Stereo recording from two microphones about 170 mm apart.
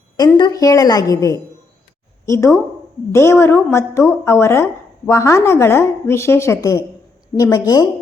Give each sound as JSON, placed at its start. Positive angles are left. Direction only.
{"t": 0.3, "sound": "a woman's voice", "side_deg": 25}